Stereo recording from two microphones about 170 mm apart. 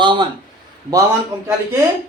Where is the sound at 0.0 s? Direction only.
25° right (ahead or behind).